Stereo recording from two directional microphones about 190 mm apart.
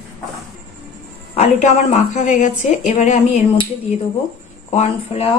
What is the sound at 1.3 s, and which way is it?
Speech, 35° left (ahead or behind).